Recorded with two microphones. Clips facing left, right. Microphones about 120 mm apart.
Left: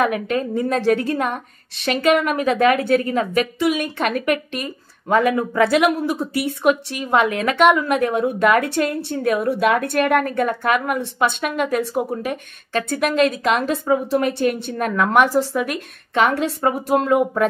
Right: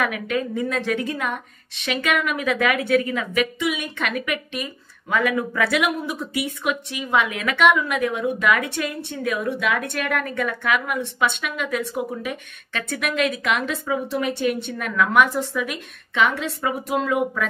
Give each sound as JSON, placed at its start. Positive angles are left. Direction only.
{"t": 0.0, "sound": "a woman's voice", "side_deg": 35}
{"t": 15.6, "sound": "a woman's voice", "side_deg": 50}